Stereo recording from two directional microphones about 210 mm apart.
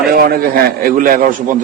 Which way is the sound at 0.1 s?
45° right (ahead or behind).